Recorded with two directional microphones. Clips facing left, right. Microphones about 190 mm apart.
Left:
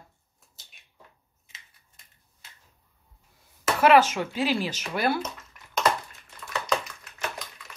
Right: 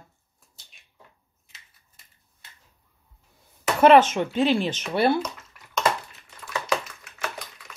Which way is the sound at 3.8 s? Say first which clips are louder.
Right 4 dB; 25° right (ahead or behind).